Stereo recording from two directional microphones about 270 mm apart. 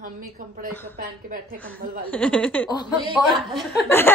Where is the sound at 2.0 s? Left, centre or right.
Centre.